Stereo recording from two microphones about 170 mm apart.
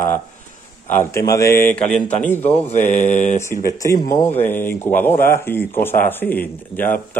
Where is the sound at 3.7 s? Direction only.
20° left (ahead or behind).